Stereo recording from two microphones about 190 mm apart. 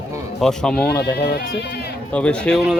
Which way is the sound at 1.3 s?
60° left (ahead or behind).